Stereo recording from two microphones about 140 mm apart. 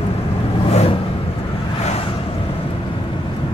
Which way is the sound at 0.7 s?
50° left (ahead or behind).